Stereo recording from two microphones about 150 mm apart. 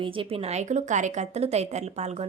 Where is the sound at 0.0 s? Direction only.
35° right (ahead or behind).